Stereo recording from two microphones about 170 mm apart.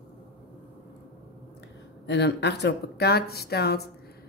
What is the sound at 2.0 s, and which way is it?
Speech, 90° left.